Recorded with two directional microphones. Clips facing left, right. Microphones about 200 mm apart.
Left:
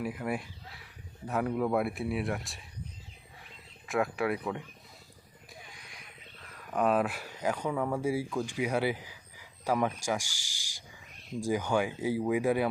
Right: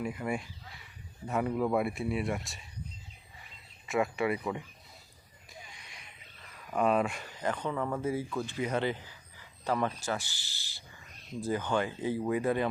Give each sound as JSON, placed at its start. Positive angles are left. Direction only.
{"t": 0.0, "sound": "speech", "side_deg": 5}
{"t": 3.8, "sound": "speech", "side_deg": 0}
{"t": 5.5, "sound": "a sound", "side_deg": 0}
{"t": 6.7, "sound": "speech", "side_deg": 0}